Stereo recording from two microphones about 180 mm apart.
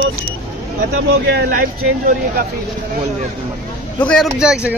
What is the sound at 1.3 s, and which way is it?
Speech, 55° right (ahead or behind).